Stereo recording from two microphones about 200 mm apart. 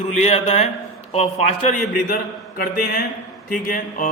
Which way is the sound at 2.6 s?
45° left (ahead or behind).